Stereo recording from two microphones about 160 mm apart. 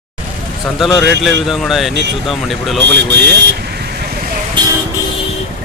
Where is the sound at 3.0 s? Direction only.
90° right.